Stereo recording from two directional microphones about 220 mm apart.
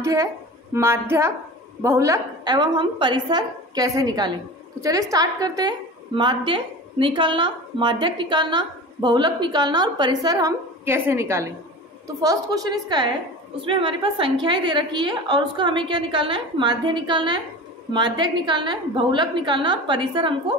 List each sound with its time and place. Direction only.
0.0 s a woman's voice: 15° right (ahead or behind)